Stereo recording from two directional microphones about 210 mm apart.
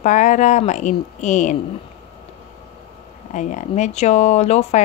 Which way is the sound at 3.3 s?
35° left (ahead or behind).